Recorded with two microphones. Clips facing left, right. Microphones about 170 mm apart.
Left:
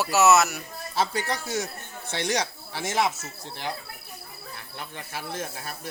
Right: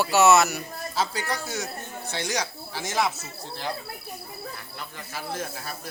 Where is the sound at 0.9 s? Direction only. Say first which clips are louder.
Left 2 dB; 25° left (ahead or behind).